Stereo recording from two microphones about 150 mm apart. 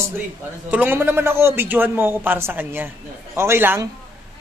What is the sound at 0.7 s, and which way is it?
A man's voice, 10° right (ahead or behind).